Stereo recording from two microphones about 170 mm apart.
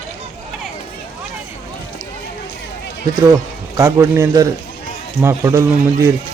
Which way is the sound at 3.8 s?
15° right (ahead or behind).